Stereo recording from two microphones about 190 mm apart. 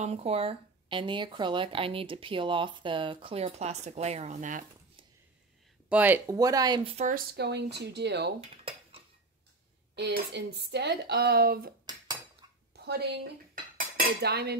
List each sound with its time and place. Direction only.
0.0 s speech: 35° right (ahead or behind)
5.9 s speech: 10° right (ahead or behind); by 7.1 s 30° right (ahead or behind)
7.1 s speech: 55° right (ahead or behind)
8.4 s dishes: 30° right (ahead or behind)
9.9 s speech: 60° right (ahead or behind)
12.7 s a sound: 60° right (ahead or behind)
13.9 s cutlery: 55° right (ahead or behind)